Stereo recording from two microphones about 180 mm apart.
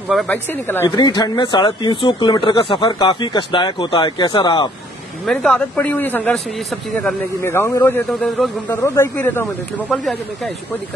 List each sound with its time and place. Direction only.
0.1 s speech: 5° left (ahead or behind)
0.8 s speech: 25° left (ahead or behind)
5.2 s a man's voice: 5° left (ahead or behind)
7.4 s speech: 15° left (ahead or behind)